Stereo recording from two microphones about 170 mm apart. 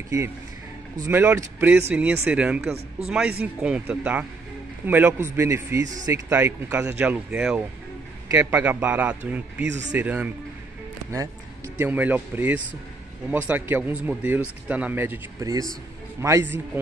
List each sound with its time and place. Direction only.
1.0 s speech: 15° right (ahead or behind)
8.3 s speech: 15° right (ahead or behind)
9.6 s speech: 90° right
9.9 s speech: 10° right (ahead or behind)
11.8 s speech: 10° right (ahead or behind)